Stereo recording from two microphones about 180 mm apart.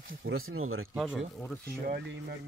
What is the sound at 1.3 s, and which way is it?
Speech, 10° left (ahead or behind).